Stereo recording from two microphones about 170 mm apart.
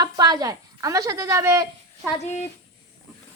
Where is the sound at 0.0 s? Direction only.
25° right (ahead or behind).